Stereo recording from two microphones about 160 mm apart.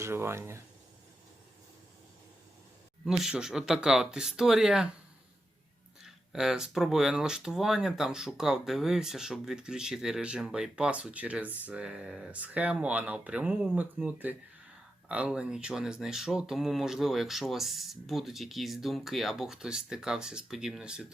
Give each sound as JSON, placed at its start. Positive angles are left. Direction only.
{"t": 0.0, "sound": "speech", "side_deg": -15}
{"t": 3.0, "sound": "speech", "side_deg": 0}
{"t": 6.0, "sound": "speech", "side_deg": -5}